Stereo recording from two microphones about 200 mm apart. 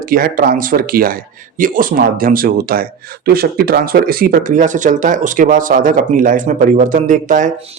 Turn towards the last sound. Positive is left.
turn(degrees=-40)  # may be behind; listen again after turning